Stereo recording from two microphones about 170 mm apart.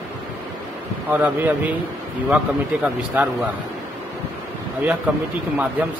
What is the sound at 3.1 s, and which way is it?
Speech, 10° right (ahead or behind).